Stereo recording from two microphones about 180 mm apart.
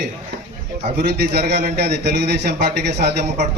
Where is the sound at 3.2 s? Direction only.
40° right (ahead or behind).